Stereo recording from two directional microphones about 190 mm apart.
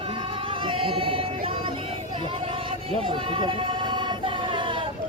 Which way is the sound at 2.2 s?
25° right (ahead or behind).